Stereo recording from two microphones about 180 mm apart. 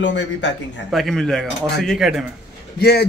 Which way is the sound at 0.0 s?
85° left.